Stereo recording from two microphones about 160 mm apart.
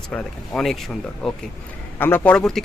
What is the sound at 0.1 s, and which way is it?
Speech, 5° left (ahead or behind).